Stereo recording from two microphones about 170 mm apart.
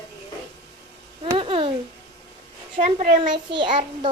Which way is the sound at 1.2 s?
30° right (ahead or behind).